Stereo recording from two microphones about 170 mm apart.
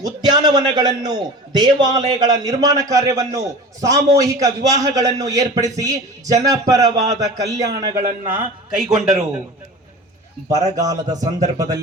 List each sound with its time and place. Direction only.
0.0 s a man's voice: 25° right (ahead or behind)
8.3 s a man's voice: 5° right (ahead or behind)
10.5 s a man's voice: 20° right (ahead or behind)